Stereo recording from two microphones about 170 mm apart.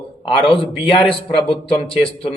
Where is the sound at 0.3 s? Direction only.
30° left (ahead or behind).